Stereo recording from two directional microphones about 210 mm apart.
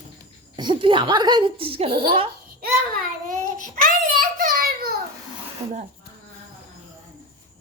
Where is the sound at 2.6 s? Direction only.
40° right (ahead or behind).